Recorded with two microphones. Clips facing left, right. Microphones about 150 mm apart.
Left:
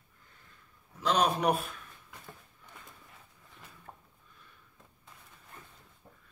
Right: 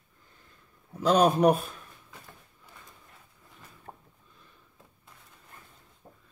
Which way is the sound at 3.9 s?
35° right (ahead or behind).